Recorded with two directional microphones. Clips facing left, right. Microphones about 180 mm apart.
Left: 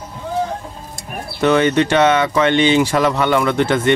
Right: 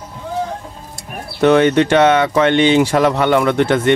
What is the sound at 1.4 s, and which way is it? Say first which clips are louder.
Speech: right 3 dB; 55° right (ahead or behind).